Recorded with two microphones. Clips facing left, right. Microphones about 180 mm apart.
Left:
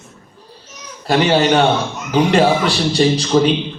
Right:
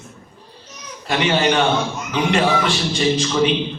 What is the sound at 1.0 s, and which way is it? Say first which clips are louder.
A man's voice: left 4 dB; 35° left (ahead or behind).